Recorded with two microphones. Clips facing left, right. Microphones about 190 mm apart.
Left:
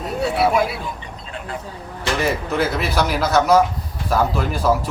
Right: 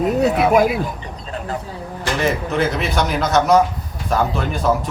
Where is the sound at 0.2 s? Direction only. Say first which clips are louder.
Right 2 dB; 40° right (ahead or behind).